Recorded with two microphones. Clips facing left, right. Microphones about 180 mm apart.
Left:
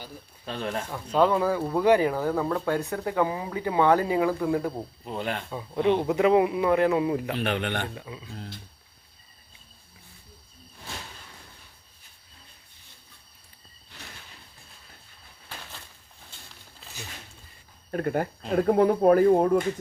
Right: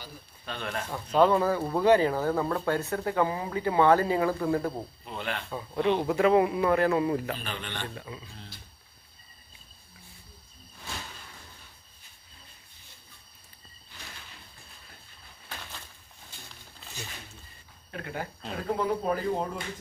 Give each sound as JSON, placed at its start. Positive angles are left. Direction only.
{"t": 0.4, "sound": "speech", "side_deg": 30}
{"t": 0.9, "sound": "speech", "side_deg": -10}
{"t": 1.3, "sound": "speech", "side_deg": 10}
{"t": 2.3, "sound": "speech", "side_deg": 0}
{"t": 2.6, "sound": "speech", "side_deg": 15}
{"t": 5.0, "sound": "speech", "side_deg": 40}
{"t": 5.5, "sound": "speech", "side_deg": 15}
{"t": 7.3, "sound": "speech", "side_deg": 65}
{"t": 7.9, "sound": "speech", "side_deg": 15}
{"t": 17.9, "sound": "speech", "side_deg": 45}